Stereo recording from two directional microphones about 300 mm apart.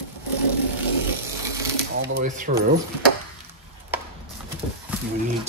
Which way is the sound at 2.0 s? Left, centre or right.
Right.